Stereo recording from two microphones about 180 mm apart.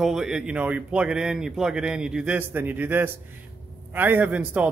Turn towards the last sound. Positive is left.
turn(degrees=-10)  # may be behind; listen again after turning